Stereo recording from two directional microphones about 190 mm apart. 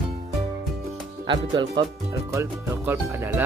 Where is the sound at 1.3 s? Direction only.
25° right (ahead or behind).